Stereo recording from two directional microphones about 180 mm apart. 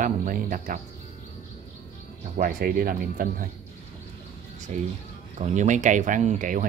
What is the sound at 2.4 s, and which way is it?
Speech, 55° right (ahead or behind).